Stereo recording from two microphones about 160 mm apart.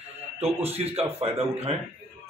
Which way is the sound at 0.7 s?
40° right (ahead or behind).